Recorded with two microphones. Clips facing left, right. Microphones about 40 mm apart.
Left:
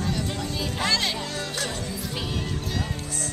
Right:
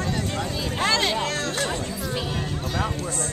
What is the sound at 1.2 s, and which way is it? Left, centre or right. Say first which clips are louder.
Music: right 5 dB; right.